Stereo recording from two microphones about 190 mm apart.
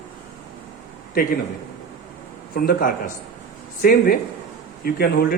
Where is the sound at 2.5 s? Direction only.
50° left (ahead or behind).